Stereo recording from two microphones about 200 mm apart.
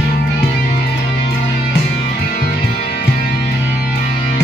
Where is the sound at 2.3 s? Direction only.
45° left (ahead or behind).